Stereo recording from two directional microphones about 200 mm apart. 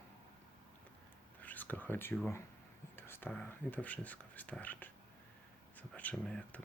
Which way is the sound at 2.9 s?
10° left (ahead or behind).